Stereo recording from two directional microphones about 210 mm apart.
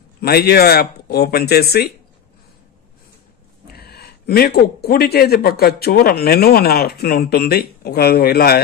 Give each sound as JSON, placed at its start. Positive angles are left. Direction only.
{"t": 0.2, "sound": "speech", "side_deg": 50}
{"t": 3.7, "sound": "speech", "side_deg": 50}